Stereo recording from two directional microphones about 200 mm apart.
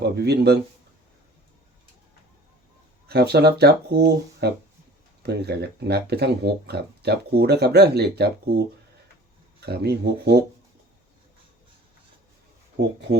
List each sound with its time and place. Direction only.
0.0 s speech: 55° right (ahead or behind)
3.1 s speech: 55° right (ahead or behind)